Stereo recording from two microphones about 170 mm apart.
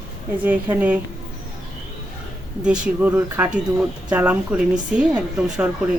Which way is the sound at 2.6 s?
10° right (ahead or behind).